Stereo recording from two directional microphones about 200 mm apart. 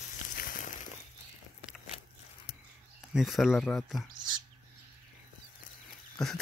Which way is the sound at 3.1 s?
Centre (ahead or behind).